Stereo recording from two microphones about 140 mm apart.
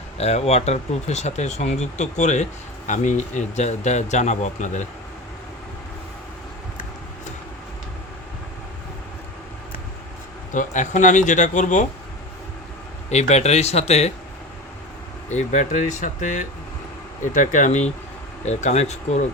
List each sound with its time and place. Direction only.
0.2 s speech: 50° left (ahead or behind)
10.5 s speech: 65° left (ahead or behind)
13.1 s speech: 50° left (ahead or behind)
15.3 s speech: 60° left (ahead or behind)